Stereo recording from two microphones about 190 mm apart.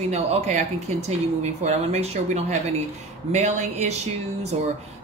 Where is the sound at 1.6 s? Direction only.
35° right (ahead or behind).